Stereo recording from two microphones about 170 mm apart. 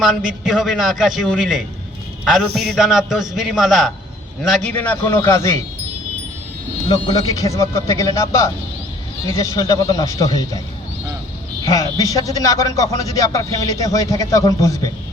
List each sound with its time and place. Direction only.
0.0 s a man's voice: centre (ahead or behind); by 5.5 s 15° left (ahead or behind)
6.8 s a man's voice: 20° left (ahead or behind)
11.6 s speech: 20° left (ahead or behind)